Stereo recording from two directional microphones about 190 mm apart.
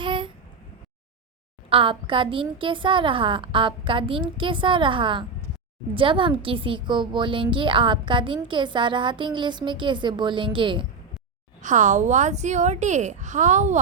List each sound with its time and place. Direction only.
0.0 s a sound: 25° right (ahead or behind)
1.7 s a woman's voice: 25° right (ahead or behind)
11.6 s a woman's voice: 40° right (ahead or behind)